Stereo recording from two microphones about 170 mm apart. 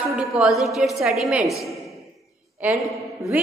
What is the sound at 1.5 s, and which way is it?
Speech, 20° left (ahead or behind).